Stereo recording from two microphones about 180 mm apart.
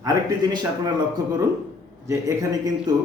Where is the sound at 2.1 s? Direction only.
20° right (ahead or behind).